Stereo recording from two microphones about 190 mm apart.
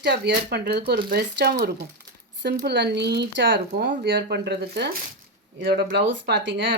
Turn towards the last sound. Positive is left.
turn(degrees=-65)  # may be behind; listen again after turning